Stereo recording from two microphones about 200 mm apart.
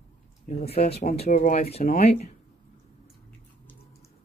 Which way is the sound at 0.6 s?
30° left (ahead or behind).